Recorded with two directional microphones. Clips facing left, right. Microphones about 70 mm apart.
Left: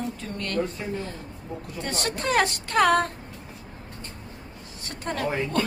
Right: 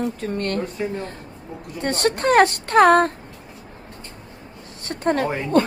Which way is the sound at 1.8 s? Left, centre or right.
Right.